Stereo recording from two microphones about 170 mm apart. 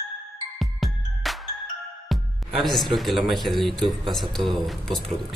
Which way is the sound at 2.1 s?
Centre (ahead or behind).